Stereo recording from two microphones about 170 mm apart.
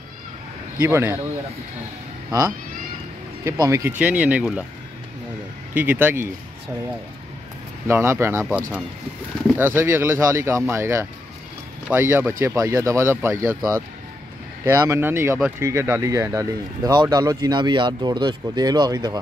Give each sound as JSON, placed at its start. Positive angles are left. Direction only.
{"t": 0.7, "sound": "speech", "side_deg": -15}
{"t": 3.6, "sound": "speech", "side_deg": -15}
{"t": 5.8, "sound": "speech", "side_deg": -10}
{"t": 7.8, "sound": "speech", "side_deg": -15}